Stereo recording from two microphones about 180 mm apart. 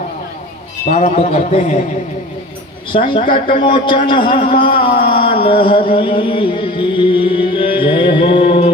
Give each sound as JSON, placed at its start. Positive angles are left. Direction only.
{"t": 0.8, "sound": "a man's voice", "side_deg": 35}
{"t": 2.9, "sound": "a man's voice", "side_deg": 30}